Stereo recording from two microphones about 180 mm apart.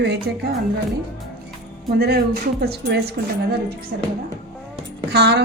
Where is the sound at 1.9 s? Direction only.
60° right (ahead or behind).